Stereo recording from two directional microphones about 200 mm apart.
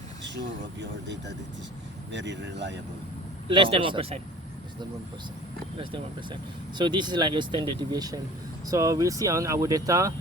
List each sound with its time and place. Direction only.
0.3 s speech: 60° right (ahead or behind)
3.5 s speech: 25° right (ahead or behind)
5.7 s speech: 25° right (ahead or behind)